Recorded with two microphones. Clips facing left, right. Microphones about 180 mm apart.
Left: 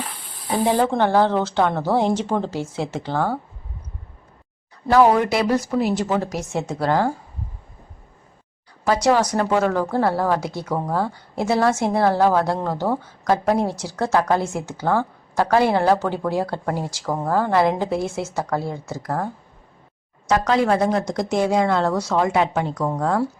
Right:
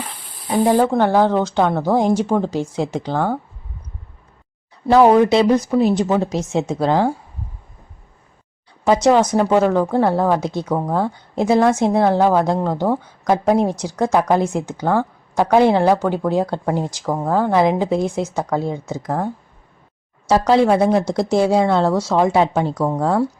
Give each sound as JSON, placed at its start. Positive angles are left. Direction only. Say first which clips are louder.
{"t": 0.4, "sound": "a woman's voice", "louder": "right 4 dB", "side_deg": -10}
{"t": 4.9, "sound": "a woman's voice", "louder": "right 4 dB", "side_deg": -20}
{"t": 8.9, "sound": "a woman's voice", "louder": "right 4 dB", "side_deg": -20}
{"t": 20.2, "sound": "speech", "louder": "right 5 dB", "side_deg": -30}
{"t": 20.7, "sound": "a woman's voice", "louder": "right 4 dB", "side_deg": -10}
{"t": 21.0, "sound": "a woman's voice", "louder": "right 4 dB", "side_deg": -30}